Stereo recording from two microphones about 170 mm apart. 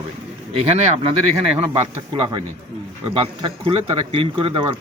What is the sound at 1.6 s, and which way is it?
Speech, 30° right (ahead or behind).